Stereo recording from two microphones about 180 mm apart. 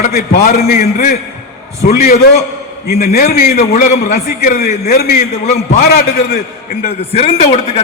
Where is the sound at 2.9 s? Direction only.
60° left (ahead or behind).